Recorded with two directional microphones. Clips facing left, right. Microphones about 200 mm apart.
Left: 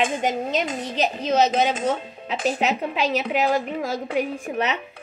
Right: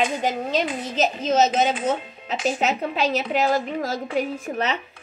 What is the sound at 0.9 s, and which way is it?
Speech, 45° right (ahead or behind).